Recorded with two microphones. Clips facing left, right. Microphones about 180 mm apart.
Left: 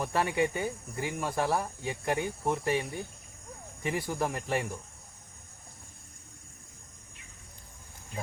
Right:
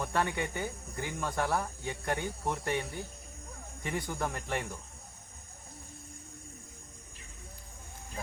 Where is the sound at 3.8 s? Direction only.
5° left (ahead or behind).